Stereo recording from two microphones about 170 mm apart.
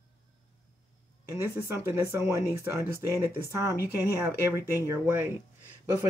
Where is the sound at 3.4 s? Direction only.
15° right (ahead or behind).